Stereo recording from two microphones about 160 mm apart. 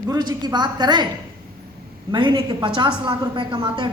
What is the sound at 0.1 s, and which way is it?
Speech, 25° right (ahead or behind).